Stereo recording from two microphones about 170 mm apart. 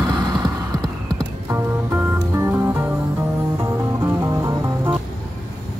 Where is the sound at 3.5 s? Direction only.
15° right (ahead or behind).